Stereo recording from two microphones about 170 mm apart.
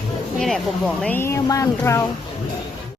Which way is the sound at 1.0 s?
15° left (ahead or behind).